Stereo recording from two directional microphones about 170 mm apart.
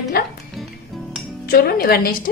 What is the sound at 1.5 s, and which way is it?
Speech, 65° left (ahead or behind).